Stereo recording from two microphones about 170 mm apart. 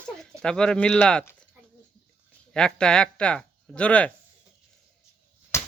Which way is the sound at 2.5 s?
5° left (ahead or behind).